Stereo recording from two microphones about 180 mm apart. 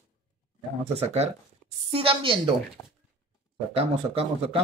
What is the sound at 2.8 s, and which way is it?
Speech, 10° left (ahead or behind).